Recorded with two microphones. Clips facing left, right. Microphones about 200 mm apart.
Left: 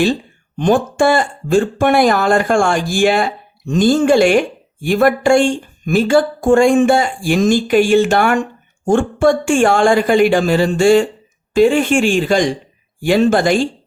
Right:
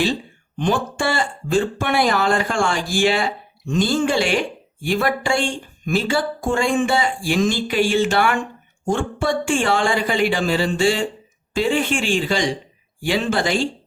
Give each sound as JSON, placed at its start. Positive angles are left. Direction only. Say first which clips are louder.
{"t": 0.6, "sound": "speech", "louder": "left 8 dB", "side_deg": 45}